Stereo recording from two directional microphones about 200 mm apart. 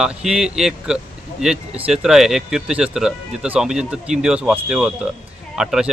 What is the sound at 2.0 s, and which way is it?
Speech, centre (ahead or behind).